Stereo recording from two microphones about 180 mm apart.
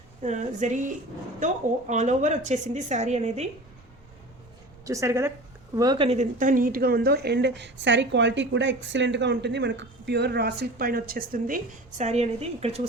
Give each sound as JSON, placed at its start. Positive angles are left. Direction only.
{"t": 0.2, "sound": "a woman's voice", "side_deg": -40}
{"t": 4.9, "sound": "speech", "side_deg": -15}
{"t": 6.1, "sound": "a woman's voice", "side_deg": -45}